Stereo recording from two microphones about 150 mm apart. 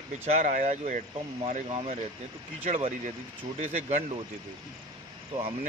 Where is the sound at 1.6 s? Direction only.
40° right (ahead or behind).